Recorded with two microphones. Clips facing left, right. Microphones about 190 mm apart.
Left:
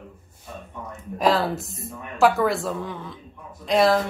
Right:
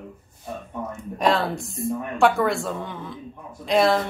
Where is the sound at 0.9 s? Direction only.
Centre (ahead or behind).